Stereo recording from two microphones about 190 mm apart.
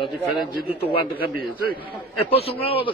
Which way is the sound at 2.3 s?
30° left (ahead or behind).